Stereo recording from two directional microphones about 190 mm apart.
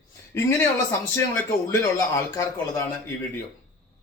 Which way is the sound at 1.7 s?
15° left (ahead or behind).